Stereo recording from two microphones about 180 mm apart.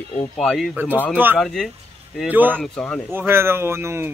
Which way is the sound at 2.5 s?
5° left (ahead or behind).